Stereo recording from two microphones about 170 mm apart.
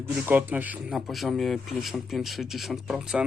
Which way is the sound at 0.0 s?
10° right (ahead or behind).